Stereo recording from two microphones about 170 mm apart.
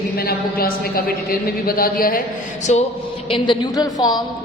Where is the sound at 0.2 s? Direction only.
60° left (ahead or behind).